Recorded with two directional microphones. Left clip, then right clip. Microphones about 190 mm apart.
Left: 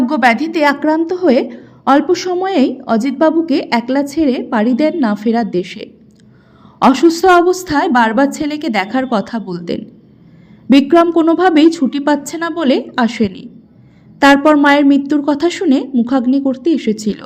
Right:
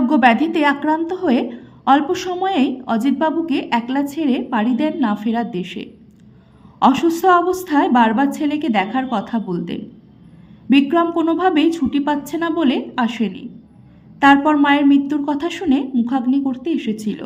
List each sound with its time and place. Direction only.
0.0 s a woman's voice: 20° left (ahead or behind)